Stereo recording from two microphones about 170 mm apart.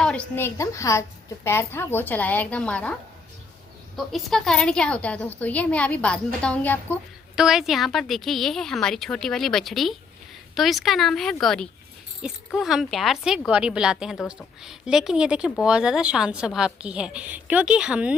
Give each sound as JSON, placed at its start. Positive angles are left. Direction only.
{"t": 0.0, "sound": "a woman's voice", "side_deg": 5}
{"t": 7.3, "sound": "a woman's voice", "side_deg": -5}